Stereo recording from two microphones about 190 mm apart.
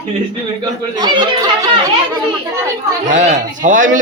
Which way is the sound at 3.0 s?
40° right (ahead or behind).